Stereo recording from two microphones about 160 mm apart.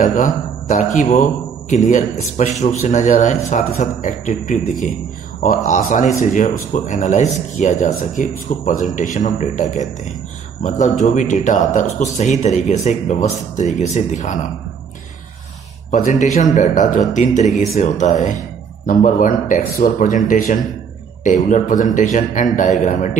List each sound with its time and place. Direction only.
0.0 s speech: 55° left (ahead or behind)
15.9 s speech: 50° left (ahead or behind)